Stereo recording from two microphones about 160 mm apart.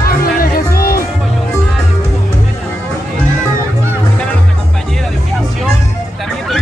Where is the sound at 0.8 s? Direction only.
65° left (ahead or behind).